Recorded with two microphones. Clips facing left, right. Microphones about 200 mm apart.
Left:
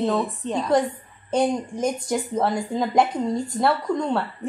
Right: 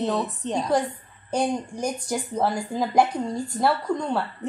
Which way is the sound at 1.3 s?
20° left (ahead or behind).